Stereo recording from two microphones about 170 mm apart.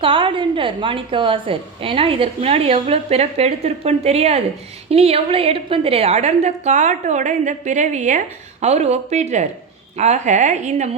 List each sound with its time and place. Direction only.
0.0 s a woman's voice: 30° right (ahead or behind)